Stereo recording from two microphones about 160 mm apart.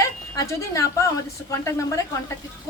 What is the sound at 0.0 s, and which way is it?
Speech, 20° left (ahead or behind).